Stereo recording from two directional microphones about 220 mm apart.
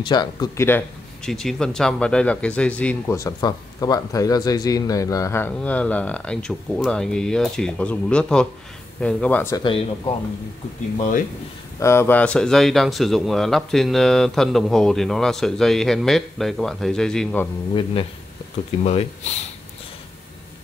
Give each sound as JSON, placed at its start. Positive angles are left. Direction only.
{"t": 0.0, "sound": "speech", "side_deg": 20}
{"t": 9.6, "sound": "speech", "side_deg": 25}
{"t": 11.8, "sound": "speech", "side_deg": 10}
{"t": 18.9, "sound": "speech", "side_deg": 30}